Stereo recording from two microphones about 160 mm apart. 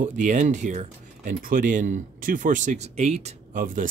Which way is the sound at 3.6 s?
60° right (ahead or behind).